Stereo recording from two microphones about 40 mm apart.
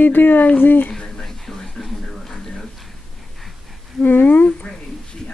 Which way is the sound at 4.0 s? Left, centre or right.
Left.